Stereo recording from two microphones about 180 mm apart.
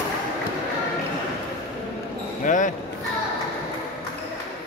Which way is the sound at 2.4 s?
45° left (ahead or behind).